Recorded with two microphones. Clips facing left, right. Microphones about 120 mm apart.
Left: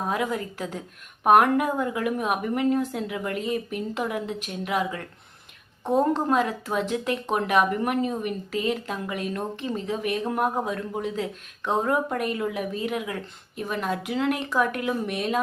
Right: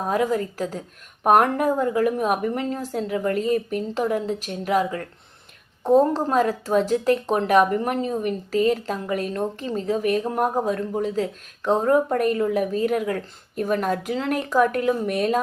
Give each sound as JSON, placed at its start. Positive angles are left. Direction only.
{"t": 0.1, "sound": "speech", "side_deg": -40}